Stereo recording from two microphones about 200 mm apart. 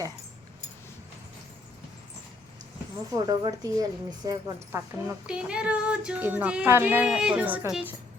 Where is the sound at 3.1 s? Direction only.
20° right (ahead or behind).